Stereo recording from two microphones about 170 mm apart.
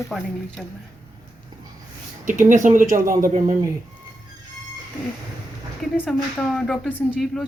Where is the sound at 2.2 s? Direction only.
50° right (ahead or behind).